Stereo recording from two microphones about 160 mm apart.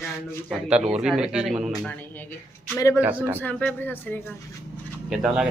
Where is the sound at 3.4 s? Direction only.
10° left (ahead or behind).